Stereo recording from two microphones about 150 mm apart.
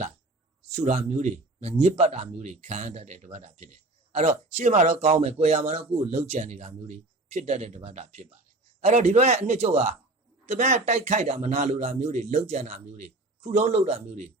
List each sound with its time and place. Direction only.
0.8 s speech: 50° right (ahead or behind)